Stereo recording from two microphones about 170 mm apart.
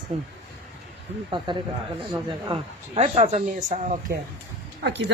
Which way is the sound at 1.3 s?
30° right (ahead or behind).